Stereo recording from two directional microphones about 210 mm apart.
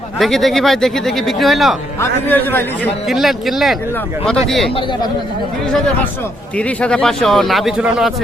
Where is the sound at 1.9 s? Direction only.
10° left (ahead or behind).